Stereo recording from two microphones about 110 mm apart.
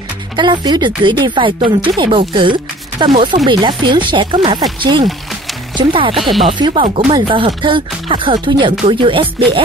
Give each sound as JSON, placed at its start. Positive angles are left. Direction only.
{"t": 0.4, "sound": "speech", "side_deg": -40}
{"t": 5.8, "sound": "speech", "side_deg": -50}
{"t": 6.1, "sound": "speech", "side_deg": 0}
{"t": 6.7, "sound": "speech", "side_deg": -65}
{"t": 7.2, "sound": "speech", "side_deg": -50}